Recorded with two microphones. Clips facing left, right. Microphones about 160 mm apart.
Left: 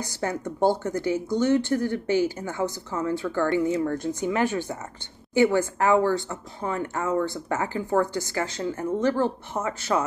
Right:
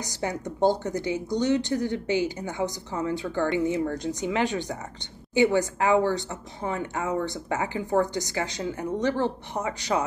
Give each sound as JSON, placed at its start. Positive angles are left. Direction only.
{"t": 0.0, "sound": "speech", "side_deg": -15}